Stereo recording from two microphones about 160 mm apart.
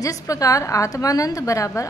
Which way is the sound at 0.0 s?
20° left (ahead or behind).